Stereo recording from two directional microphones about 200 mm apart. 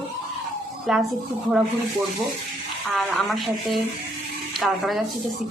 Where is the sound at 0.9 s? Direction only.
Centre (ahead or behind).